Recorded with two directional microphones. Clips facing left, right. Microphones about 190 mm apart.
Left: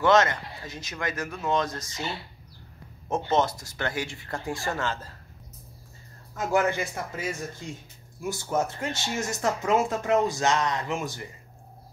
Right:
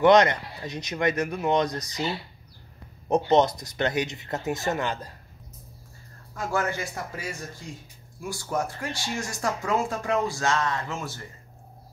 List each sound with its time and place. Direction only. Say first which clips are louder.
0.0 s speech: right 3 dB; 20° right (ahead or behind)
6.3 s speech: left 3 dB; 20° left (ahead or behind)